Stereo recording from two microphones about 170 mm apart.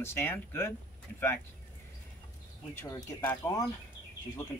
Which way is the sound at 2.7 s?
15° left (ahead or behind).